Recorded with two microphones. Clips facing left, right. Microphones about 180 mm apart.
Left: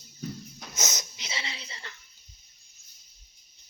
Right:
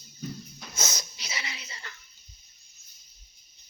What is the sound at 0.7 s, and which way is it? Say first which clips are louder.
Wheeze: even; 20° left (ahead or behind).